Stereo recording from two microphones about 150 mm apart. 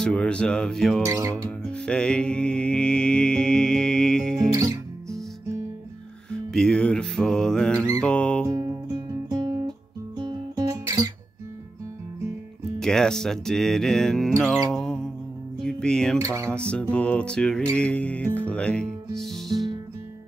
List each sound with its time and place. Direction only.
0.0 s music: 5° left (ahead or behind)
1.0 s speech: 20° right (ahead or behind)
1.7 s music: 5° left (ahead or behind)
4.5 s music: 20° right (ahead or behind)
6.3 s music: 5° left (ahead or behind)
8.5 s guitar: 20° right (ahead or behind)
12.7 s music: 5° left (ahead or behind)
15.6 s speech: 5° left (ahead or behind)
16.2 s speech: 20° right (ahead or behind)
16.4 s music: 5° left (ahead or behind)
17.7 s speech: 10° left (ahead or behind)